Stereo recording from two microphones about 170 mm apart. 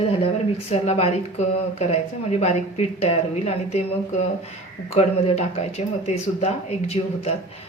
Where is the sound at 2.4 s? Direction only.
40° left (ahead or behind).